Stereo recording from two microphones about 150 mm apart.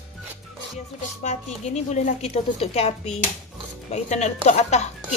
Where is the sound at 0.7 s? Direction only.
50° left (ahead or behind).